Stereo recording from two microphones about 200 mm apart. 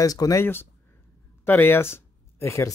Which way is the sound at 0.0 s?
15° left (ahead or behind).